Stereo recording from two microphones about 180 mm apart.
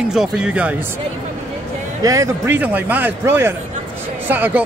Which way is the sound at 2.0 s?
15° right (ahead or behind).